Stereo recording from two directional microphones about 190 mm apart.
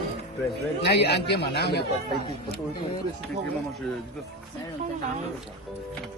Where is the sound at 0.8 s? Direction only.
60° left (ahead or behind).